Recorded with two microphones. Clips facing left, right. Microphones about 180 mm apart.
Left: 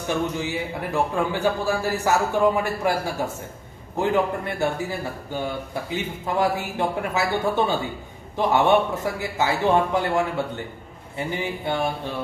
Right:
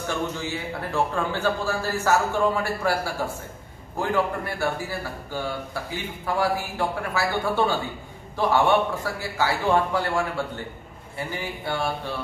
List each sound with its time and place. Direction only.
0.1 s a man's voice: 15° left (ahead or behind)